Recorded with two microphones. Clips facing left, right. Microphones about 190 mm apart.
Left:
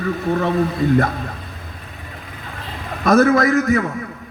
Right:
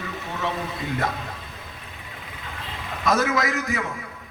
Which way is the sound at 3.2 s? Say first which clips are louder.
Left 10 dB; 55° left (ahead or behind).